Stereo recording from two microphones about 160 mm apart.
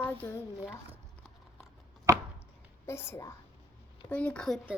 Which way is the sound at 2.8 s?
15° left (ahead or behind).